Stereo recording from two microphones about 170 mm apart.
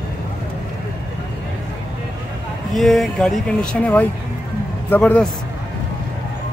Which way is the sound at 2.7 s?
Centre (ahead or behind).